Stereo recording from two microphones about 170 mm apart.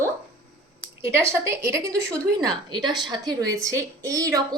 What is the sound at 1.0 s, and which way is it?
Speech, 15° right (ahead or behind).